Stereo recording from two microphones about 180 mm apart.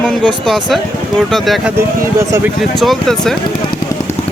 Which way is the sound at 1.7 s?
15° right (ahead or behind).